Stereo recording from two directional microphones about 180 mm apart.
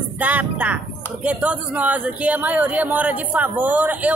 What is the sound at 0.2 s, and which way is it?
Speech, 10° right (ahead or behind).